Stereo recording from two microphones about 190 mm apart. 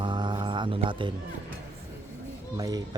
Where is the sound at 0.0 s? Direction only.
25° right (ahead or behind).